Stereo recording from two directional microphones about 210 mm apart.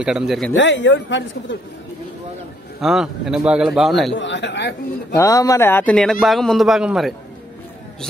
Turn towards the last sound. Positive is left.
turn(degrees=0)  # may be behind; listen again after turning